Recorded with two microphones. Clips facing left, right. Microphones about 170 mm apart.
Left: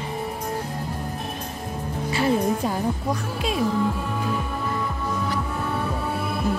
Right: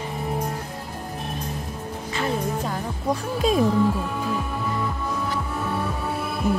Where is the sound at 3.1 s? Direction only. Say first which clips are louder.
Right 4 dB; 40° right (ahead or behind).